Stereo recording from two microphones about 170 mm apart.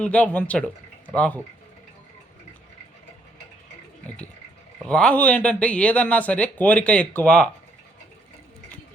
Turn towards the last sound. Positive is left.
turn(degrees=5)  # may be behind; listen again after turning